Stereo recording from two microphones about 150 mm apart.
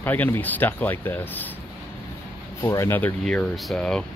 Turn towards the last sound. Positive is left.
turn(degrees=5)  # may be behind; listen again after turning